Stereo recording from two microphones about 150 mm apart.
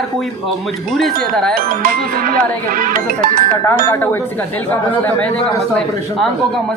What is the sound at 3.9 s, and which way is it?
Speech, 15° left (ahead or behind).